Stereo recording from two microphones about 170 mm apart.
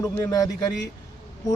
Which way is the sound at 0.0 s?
20° left (ahead or behind).